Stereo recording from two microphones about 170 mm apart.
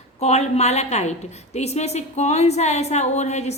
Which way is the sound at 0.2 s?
40° left (ahead or behind).